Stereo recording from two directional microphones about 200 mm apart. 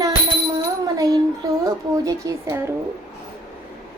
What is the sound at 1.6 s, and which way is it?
Speech, 15° right (ahead or behind).